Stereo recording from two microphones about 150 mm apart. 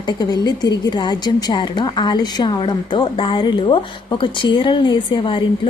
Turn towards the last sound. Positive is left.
turn(degrees=35)  # may be behind; listen again after turning